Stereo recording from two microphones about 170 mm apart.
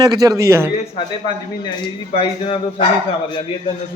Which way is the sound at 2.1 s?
35° left (ahead or behind).